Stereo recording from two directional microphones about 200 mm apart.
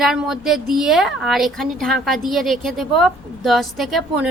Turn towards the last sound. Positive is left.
turn(degrees=0)  # may be behind; listen again after turning